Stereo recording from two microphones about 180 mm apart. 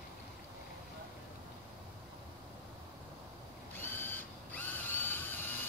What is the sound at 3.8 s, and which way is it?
Drill, 10° left (ahead or behind).